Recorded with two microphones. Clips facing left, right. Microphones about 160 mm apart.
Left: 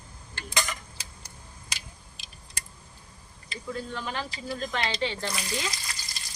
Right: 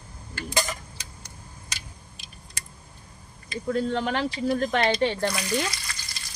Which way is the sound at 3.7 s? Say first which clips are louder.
Right 9 dB; 65° right (ahead or behind).